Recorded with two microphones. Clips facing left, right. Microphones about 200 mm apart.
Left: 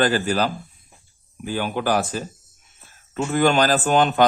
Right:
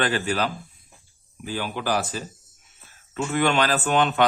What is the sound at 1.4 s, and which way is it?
A man's voice, 50° left (ahead or behind).